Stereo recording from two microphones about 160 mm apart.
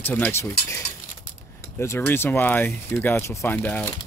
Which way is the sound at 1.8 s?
15° left (ahead or behind).